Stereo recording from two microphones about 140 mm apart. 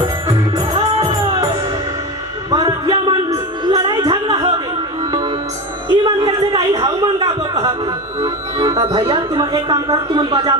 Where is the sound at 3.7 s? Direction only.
25° right (ahead or behind).